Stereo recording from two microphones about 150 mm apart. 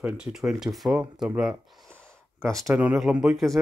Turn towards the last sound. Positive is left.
turn(degrees=0)  # may be behind; listen again after turning